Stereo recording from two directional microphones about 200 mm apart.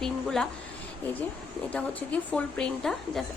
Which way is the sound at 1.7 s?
5° left (ahead or behind).